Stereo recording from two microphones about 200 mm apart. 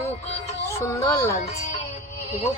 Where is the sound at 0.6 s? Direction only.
15° left (ahead or behind).